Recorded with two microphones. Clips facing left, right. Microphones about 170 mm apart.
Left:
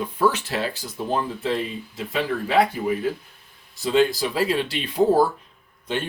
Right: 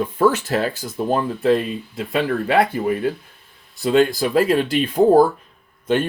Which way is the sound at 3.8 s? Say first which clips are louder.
Right 3 dB; 55° right (ahead or behind).